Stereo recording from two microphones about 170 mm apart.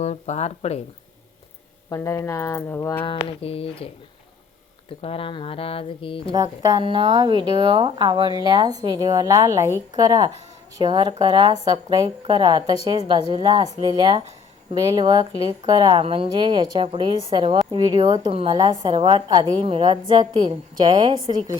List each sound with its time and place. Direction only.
0.0 s speech: 40° left (ahead or behind)
1.9 s speech: 15° left (ahead or behind)
3.0 s speech: 30° left (ahead or behind)
4.9 s speech: 35° left (ahead or behind)
6.3 s a woman's voice: 20° right (ahead or behind)